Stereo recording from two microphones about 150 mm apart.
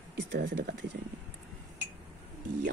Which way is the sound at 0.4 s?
90° right.